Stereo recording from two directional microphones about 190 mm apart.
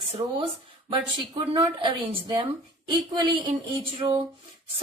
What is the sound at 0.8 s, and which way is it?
A woman's voice, 25° right (ahead or behind).